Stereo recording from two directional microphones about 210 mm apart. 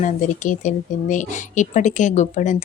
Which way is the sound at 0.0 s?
35° left (ahead or behind).